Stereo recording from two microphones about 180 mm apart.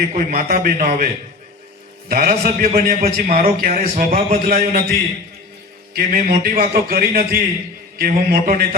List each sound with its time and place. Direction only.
0.1 s a man's voice: 55° right (ahead or behind)
2.0 s a man's voice: 50° right (ahead or behind)
2.3 s a man's voice: 35° right (ahead or behind)
2.7 s a man's voice: 55° right (ahead or behind)